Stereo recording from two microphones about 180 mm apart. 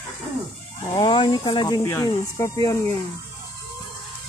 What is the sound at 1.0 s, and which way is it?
Speech, 25° left (ahead or behind).